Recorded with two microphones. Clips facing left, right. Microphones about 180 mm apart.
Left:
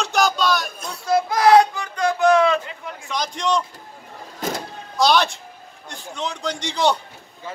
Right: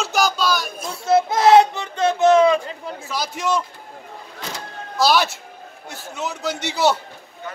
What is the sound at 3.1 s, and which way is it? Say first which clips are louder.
Speech: left 1 dB; 5° right (ahead or behind).